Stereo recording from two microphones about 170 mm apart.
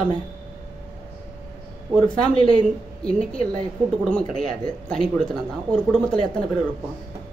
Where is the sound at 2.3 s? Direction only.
30° right (ahead or behind).